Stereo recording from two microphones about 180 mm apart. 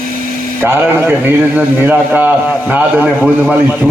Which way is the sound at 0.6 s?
10° right (ahead or behind).